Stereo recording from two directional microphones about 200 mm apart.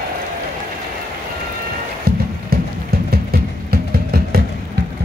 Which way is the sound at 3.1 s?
50° right (ahead or behind).